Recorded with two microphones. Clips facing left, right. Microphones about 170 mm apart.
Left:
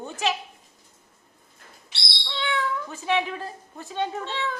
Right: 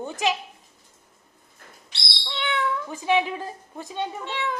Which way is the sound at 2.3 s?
20° right (ahead or behind).